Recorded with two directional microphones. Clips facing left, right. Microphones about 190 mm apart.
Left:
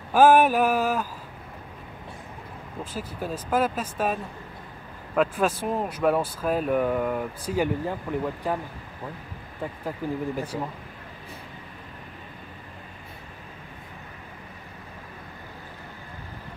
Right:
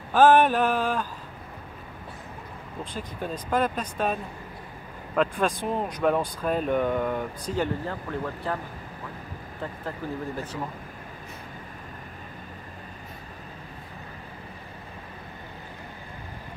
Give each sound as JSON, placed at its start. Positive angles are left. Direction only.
{"t": 0.1, "sound": "speech", "side_deg": 10}
{"t": 2.8, "sound": "speech", "side_deg": 5}
{"t": 9.6, "sound": "speech", "side_deg": 10}